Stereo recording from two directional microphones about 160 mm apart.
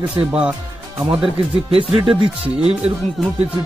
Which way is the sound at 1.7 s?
35° right (ahead or behind).